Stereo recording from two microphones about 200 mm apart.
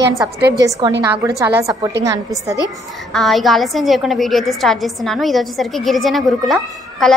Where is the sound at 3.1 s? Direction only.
Centre (ahead or behind).